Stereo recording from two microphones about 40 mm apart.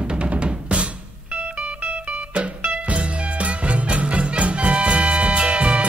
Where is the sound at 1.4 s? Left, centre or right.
Right.